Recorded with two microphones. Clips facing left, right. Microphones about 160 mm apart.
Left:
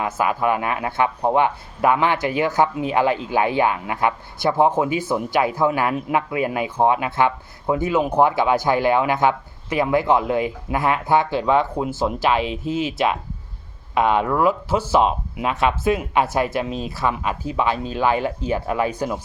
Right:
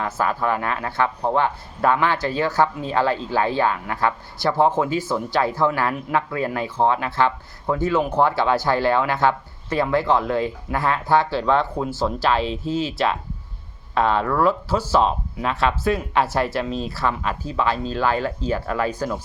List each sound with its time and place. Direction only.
0.0 s speech: 15° left (ahead or behind)